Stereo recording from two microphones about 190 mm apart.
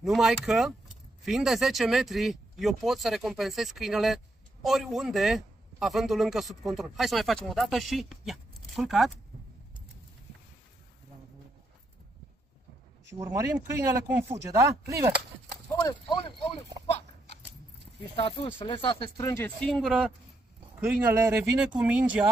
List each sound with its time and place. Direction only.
0.0 s a man's voice: centre (ahead or behind)
13.2 s speech: 15° right (ahead or behind)
15.9 s speech: 25° left (ahead or behind)
18.1 s speech: 30° left (ahead or behind); by 22.2 s 5° right (ahead or behind)